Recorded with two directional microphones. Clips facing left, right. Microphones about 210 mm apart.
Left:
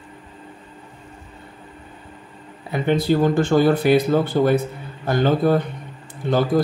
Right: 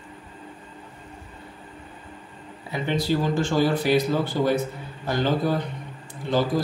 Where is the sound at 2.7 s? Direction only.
55° left (ahead or behind).